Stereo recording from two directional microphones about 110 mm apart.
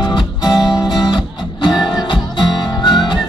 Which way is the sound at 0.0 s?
40° left (ahead or behind).